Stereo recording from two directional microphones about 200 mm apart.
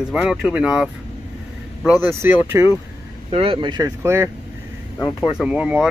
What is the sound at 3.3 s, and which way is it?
Speech, 25° right (ahead or behind).